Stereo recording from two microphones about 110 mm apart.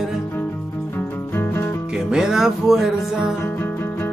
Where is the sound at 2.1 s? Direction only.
5° right (ahead or behind).